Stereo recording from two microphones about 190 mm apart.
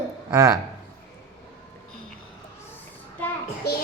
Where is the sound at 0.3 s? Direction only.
15° right (ahead or behind).